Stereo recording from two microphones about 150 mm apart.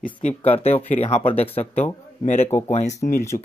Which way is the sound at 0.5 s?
40° left (ahead or behind).